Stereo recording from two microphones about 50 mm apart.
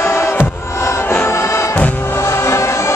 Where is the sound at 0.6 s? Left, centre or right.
Left.